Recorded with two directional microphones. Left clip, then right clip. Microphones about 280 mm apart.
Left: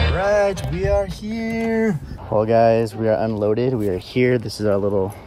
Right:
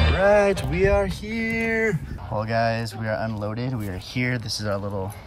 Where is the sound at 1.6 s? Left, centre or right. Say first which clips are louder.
Left 3 dB; centre.